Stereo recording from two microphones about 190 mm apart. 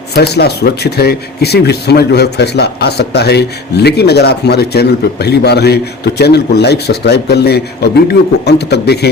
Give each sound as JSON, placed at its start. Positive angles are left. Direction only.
{"t": 0.1, "sound": "speech", "side_deg": 60}